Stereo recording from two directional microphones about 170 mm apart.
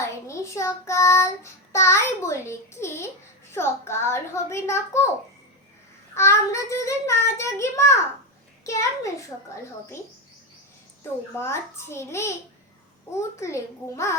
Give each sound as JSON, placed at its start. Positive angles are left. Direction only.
{"t": 0.3, "sound": "child singing", "side_deg": 15}
{"t": 6.1, "sound": "child singing", "side_deg": 15}
{"t": 11.3, "sound": "child singing", "side_deg": 15}